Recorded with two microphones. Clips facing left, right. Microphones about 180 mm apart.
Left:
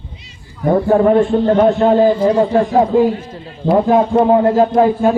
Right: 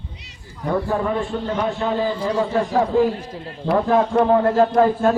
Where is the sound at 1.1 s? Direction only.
60° left (ahead or behind); by 2.6 s 45° left (ahead or behind).